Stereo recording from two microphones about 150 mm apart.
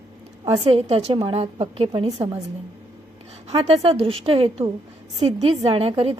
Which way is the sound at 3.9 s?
40° right (ahead or behind).